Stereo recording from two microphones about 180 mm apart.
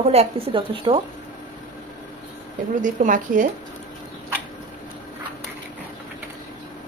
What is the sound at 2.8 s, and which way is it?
Speech, 45° right (ahead or behind).